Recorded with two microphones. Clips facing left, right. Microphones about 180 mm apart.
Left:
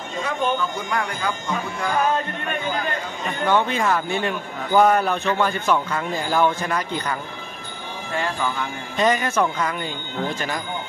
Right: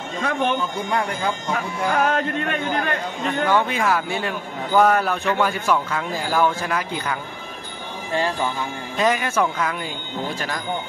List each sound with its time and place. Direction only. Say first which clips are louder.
0.2 s speech: right 1 dB; 65° right (ahead or behind)
1.5 s speech: right 1 dB; 80° right
3.4 s speech: left 1 dB; 10° right (ahead or behind)
8.9 s speech: left 1 dB; 5° right (ahead or behind)